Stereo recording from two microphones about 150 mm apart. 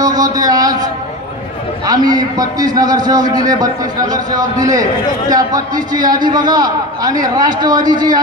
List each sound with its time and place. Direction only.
0.0 s a man's voice: 25° right (ahead or behind)
1.9 s a man's voice: 25° right (ahead or behind)